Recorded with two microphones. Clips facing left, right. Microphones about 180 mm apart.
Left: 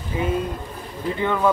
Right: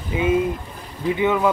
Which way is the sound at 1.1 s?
10° right (ahead or behind).